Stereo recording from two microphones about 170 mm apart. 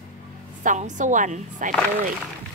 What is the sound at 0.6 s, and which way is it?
A woman's voice, 50° right (ahead or behind).